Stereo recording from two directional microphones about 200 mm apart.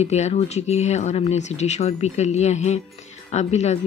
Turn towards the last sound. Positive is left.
turn(degrees=35)  # may be behind; listen again after turning